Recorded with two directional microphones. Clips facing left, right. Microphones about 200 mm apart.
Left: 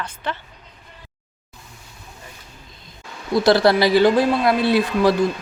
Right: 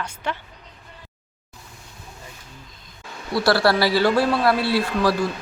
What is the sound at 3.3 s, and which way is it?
Speech, 20° left (ahead or behind).